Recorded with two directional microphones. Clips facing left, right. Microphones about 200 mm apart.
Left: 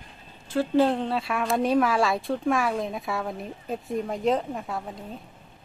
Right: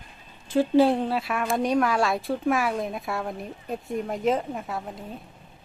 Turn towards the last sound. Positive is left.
turn(degrees=0)  # may be behind; listen again after turning